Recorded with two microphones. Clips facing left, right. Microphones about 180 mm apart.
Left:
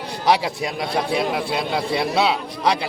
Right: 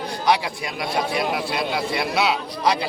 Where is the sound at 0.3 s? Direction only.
35° left (ahead or behind).